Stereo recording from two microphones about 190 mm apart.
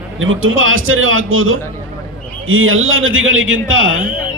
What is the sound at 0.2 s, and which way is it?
A man's voice, 90° right.